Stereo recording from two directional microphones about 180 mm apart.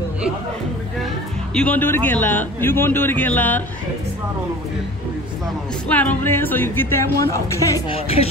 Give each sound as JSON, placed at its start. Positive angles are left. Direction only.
{"t": 1.5, "sound": "a man's voice", "side_deg": 5}
{"t": 5.9, "sound": "a man's voice", "side_deg": 10}
{"t": 7.9, "sound": "speech", "side_deg": 35}